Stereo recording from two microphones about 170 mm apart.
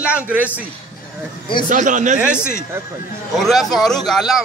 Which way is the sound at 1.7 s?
50° right (ahead or behind).